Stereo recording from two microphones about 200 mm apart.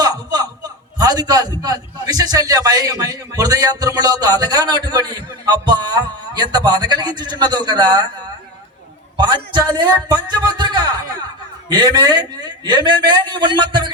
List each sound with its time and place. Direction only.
0.0 s a man's voice: 20° right (ahead or behind)
9.1 s a man's voice: 20° right (ahead or behind)